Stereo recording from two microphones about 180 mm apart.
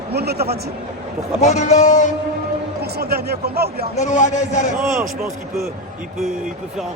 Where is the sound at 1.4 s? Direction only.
40° left (ahead or behind).